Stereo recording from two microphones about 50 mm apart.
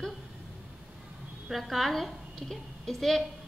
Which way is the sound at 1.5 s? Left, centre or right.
Centre.